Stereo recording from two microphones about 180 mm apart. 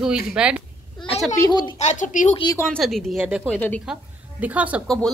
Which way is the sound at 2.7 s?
Centre (ahead or behind).